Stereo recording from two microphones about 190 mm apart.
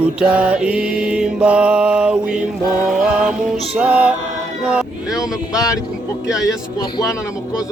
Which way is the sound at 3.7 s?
5° right (ahead or behind).